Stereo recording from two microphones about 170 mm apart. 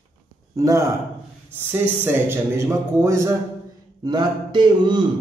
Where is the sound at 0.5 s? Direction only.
20° right (ahead or behind).